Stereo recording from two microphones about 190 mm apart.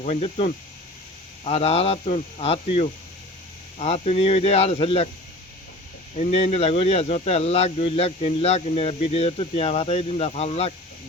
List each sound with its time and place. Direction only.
0.0 s speech: 35° left (ahead or behind)
6.1 s speech: 35° left (ahead or behind)